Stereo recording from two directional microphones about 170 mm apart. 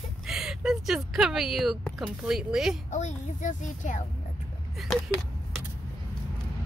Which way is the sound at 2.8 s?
45° left (ahead or behind).